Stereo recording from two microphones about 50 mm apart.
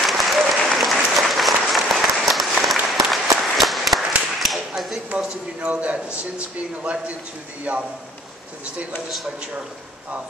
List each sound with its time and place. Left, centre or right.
0.0 s applause: centre
3.5 s clapping: centre
5.1 s a man's voice: right